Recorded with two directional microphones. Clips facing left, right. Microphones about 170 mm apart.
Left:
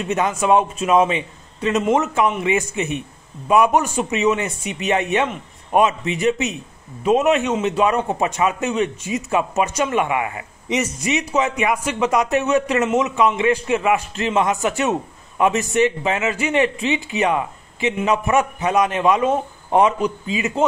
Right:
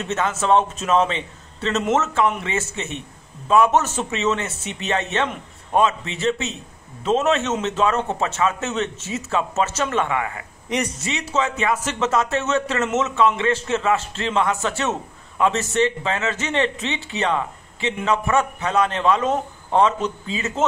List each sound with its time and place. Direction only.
0.0 s speech: 15° left (ahead or behind)